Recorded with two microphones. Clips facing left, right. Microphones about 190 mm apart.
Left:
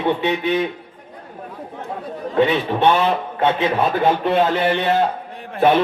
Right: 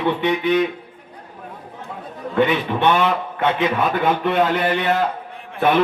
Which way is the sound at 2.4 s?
30° left (ahead or behind).